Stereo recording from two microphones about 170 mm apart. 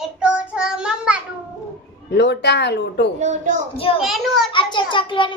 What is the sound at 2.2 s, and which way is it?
Speech, 85° left.